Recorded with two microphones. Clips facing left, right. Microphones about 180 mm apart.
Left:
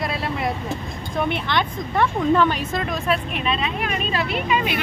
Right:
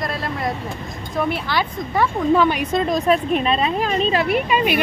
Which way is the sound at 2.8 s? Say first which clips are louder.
Right 8 dB; 35° right (ahead or behind).